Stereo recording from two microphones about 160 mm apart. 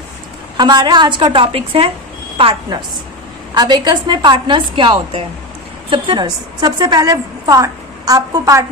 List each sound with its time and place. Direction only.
0.6 s a woman's voice: 25° right (ahead or behind)